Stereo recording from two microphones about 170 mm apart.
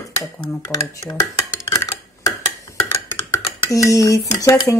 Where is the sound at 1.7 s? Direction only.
20° left (ahead or behind).